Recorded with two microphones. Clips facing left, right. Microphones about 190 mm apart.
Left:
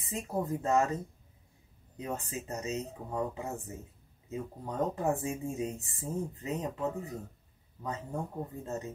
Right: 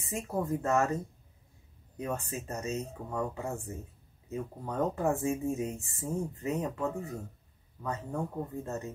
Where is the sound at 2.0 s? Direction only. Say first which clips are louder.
Right 2 dB; 15° left (ahead or behind).